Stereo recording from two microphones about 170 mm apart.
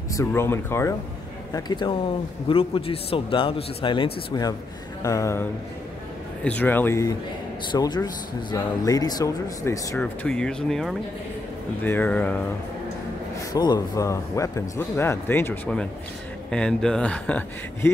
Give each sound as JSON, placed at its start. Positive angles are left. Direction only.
{"t": 0.1, "sound": "speech", "side_deg": 15}
{"t": 1.5, "sound": "a man's voice", "side_deg": 25}
{"t": 9.9, "sound": "speech", "side_deg": 5}
{"t": 13.5, "sound": "speech", "side_deg": 20}